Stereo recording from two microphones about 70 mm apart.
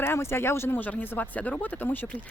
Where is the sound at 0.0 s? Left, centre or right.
Left.